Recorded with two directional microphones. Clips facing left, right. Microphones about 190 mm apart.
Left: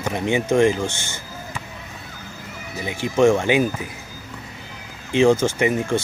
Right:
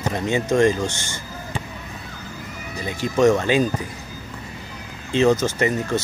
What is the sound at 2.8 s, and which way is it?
Speech, 20° left (ahead or behind).